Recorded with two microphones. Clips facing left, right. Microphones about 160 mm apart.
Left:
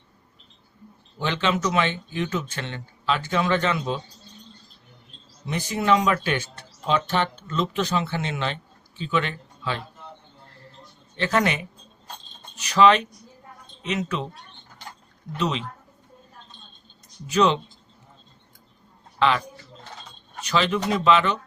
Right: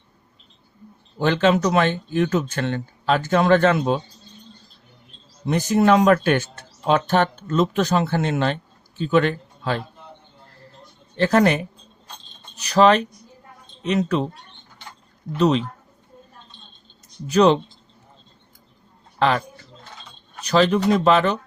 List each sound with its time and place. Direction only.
1.2 s speech: 45° right (ahead or behind)
5.5 s a man's voice: 45° right (ahead or behind)
11.2 s speech: 40° right (ahead or behind)
12.6 s speech: 40° right (ahead or behind)
15.4 s speech: 40° right (ahead or behind)
17.2 s speech: 40° right (ahead or behind)
20.4 s speech: 40° right (ahead or behind)